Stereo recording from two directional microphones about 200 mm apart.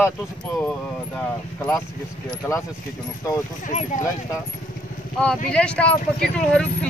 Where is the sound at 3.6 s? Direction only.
35° left (ahead or behind).